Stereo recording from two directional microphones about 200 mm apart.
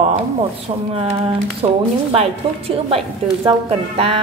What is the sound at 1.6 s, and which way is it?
A woman's voice, 25° right (ahead or behind).